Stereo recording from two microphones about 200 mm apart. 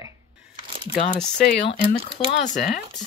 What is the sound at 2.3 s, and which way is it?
Speech, 40° left (ahead or behind).